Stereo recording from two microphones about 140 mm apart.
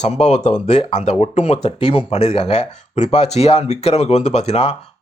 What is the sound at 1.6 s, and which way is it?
Speech, 40° left (ahead or behind).